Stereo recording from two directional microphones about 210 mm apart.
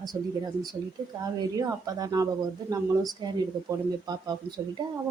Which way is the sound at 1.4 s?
15° right (ahead or behind).